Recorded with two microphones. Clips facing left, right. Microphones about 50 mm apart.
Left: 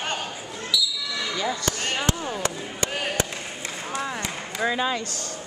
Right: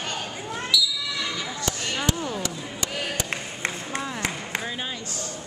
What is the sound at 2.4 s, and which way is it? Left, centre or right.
Chop, left.